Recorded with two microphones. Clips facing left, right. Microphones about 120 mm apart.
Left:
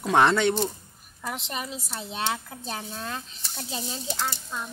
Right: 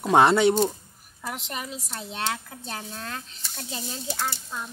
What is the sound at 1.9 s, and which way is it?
Speech, 5° left (ahead or behind).